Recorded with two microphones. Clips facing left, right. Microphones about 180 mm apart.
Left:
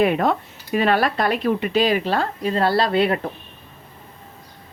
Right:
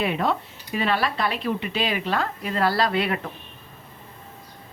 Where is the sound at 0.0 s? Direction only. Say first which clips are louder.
Left 6 dB; 50° left (ahead or behind); by 3.2 s 30° left (ahead or behind).